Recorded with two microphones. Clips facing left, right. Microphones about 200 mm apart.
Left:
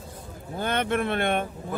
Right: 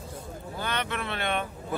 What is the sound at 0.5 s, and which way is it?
Speech, 50° left (ahead or behind).